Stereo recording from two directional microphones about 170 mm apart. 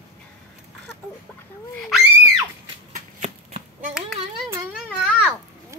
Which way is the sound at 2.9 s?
50° right (ahead or behind).